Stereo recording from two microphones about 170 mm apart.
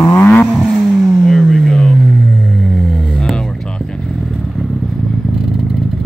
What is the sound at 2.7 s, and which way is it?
Music, 5° left (ahead or behind).